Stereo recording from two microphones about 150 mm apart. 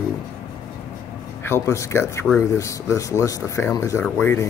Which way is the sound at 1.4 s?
15° left (ahead or behind).